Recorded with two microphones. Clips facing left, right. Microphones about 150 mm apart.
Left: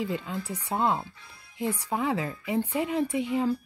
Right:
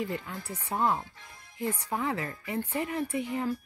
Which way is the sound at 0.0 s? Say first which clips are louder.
Left 3 dB; 15° left (ahead or behind).